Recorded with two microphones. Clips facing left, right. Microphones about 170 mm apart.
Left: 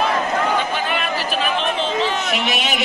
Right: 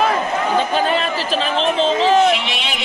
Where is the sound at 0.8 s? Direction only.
30° right (ahead or behind).